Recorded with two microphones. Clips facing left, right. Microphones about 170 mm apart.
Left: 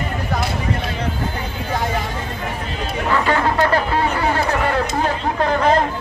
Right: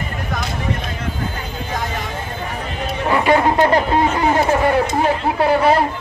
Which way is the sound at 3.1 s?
15° right (ahead or behind).